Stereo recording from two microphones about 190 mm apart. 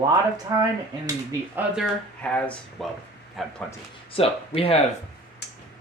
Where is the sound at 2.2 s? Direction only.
5° left (ahead or behind).